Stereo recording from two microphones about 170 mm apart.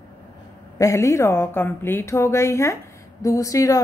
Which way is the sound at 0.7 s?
20° left (ahead or behind).